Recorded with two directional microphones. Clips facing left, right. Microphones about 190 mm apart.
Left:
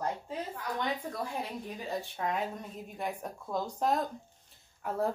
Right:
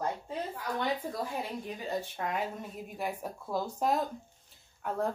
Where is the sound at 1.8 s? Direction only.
Centre (ahead or behind).